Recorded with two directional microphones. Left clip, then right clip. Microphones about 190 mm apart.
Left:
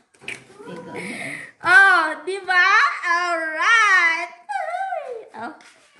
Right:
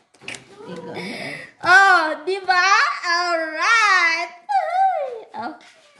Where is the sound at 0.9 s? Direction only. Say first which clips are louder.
Left 1 dB; 40° right (ahead or behind).